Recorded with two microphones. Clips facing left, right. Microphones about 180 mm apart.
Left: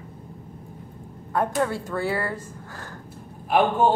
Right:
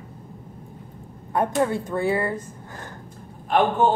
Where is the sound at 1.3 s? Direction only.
20° right (ahead or behind).